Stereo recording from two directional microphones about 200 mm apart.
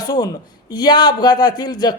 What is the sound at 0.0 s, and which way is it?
Speech, 20° left (ahead or behind).